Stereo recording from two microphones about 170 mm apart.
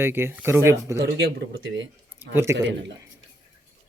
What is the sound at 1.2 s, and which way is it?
Speech, 85° right.